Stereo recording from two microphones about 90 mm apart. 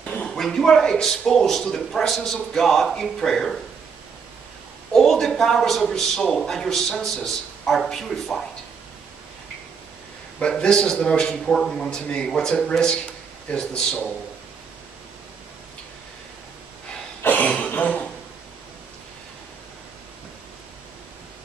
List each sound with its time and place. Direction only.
0.0 s speech: 15° left (ahead or behind)
4.9 s speech: 5° left (ahead or behind)
10.4 s a man's voice: 10° left (ahead or behind)
17.2 s a sound: 20° left (ahead or behind)